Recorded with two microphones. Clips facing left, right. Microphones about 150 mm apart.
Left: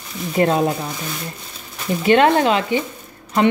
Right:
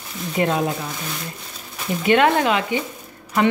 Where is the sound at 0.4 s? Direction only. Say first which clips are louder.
Left 4 dB; 35° left (ahead or behind).